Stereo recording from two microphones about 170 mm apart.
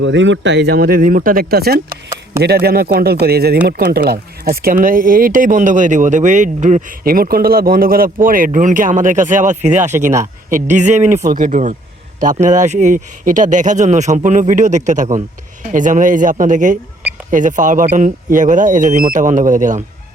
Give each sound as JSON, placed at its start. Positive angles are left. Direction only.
{"t": 0.0, "sound": "a man's voice", "side_deg": -90}